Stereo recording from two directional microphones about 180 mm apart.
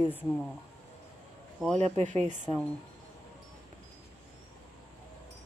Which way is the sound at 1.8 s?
40° right (ahead or behind).